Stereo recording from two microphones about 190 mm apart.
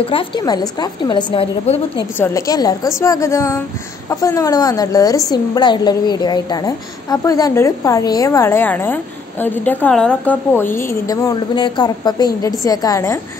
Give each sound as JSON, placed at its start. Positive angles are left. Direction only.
{"t": 0.0, "sound": "a woman's voice", "side_deg": 25}
{"t": 2.1, "sound": "a woman's voice", "side_deg": 15}